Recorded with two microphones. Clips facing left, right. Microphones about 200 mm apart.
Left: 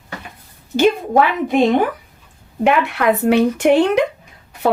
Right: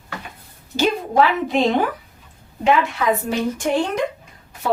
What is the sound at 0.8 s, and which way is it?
Speech, 55° left (ahead or behind).